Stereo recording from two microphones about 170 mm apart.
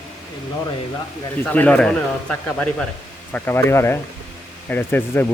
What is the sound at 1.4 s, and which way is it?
A man's voice, 10° left (ahead or behind).